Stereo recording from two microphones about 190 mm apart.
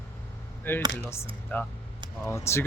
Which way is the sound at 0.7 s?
10° left (ahead or behind).